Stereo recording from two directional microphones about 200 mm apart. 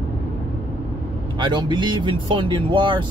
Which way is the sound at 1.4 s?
25° right (ahead or behind).